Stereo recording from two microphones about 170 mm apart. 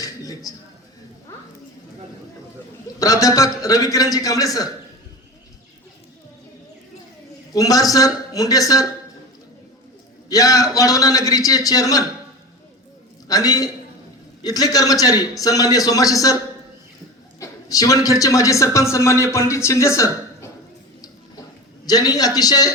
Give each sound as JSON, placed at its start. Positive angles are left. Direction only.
{"t": 0.0, "sound": "a sound", "side_deg": 20}
{"t": 2.8, "sound": "a man's voice", "side_deg": 20}
{"t": 7.5, "sound": "a man's voice", "side_deg": 20}
{"t": 10.2, "sound": "a man's voice", "side_deg": 20}
{"t": 13.2, "sound": "a man's voice", "side_deg": 20}
{"t": 17.4, "sound": "a man's voice", "side_deg": 20}
{"t": 21.8, "sound": "a man's voice", "side_deg": 20}